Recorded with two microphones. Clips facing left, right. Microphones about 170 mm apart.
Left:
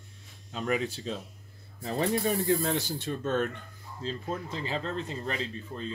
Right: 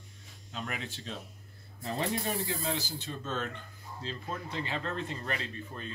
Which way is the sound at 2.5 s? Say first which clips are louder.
Left 7 dB; 55° left (ahead or behind).